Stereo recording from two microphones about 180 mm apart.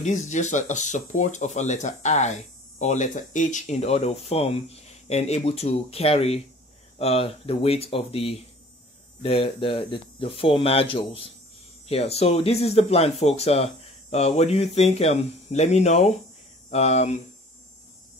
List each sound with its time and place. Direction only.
0.0 s speech: 40° left (ahead or behind)